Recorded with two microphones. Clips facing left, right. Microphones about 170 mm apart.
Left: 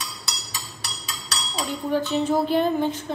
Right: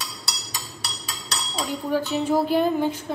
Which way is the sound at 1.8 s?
5° right (ahead or behind).